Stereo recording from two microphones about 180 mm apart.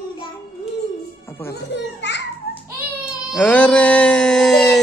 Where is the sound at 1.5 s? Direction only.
75° left (ahead or behind).